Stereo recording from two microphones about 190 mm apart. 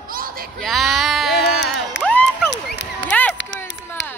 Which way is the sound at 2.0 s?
5° left (ahead or behind).